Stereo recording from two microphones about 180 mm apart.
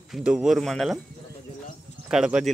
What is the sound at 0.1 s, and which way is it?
Speech, 5° right (ahead or behind).